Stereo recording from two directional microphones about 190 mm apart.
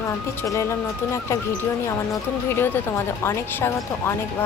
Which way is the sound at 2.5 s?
10° left (ahead or behind).